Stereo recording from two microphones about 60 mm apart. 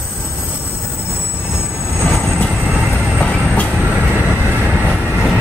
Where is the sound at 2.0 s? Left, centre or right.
Left.